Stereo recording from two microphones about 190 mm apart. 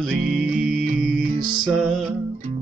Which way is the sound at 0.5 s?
45° right (ahead or behind).